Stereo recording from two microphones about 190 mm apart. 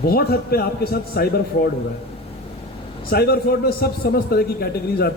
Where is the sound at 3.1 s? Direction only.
55° left (ahead or behind).